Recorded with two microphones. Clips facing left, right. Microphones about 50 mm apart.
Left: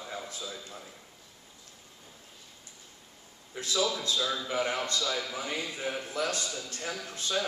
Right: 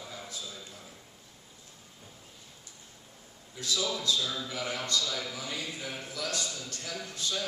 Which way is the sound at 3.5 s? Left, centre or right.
Left.